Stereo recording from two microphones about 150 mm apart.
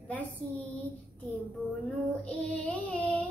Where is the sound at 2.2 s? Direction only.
10° left (ahead or behind).